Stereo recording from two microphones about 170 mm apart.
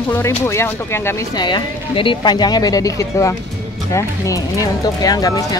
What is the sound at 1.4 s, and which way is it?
Speech, 30° left (ahead or behind).